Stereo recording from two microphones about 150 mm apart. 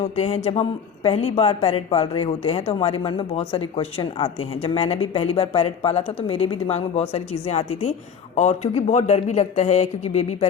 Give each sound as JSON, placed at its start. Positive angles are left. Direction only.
{"t": 0.0, "sound": "speech", "side_deg": 45}